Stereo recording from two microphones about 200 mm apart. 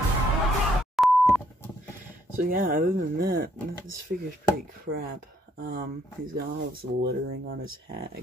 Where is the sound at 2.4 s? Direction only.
45° right (ahead or behind).